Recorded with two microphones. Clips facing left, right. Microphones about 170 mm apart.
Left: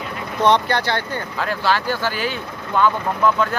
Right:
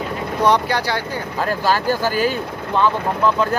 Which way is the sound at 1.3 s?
40° right (ahead or behind).